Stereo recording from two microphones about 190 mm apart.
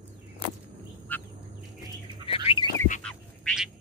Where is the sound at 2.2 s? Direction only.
30° left (ahead or behind).